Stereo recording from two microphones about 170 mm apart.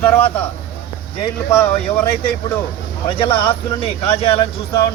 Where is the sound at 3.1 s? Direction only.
30° left (ahead or behind).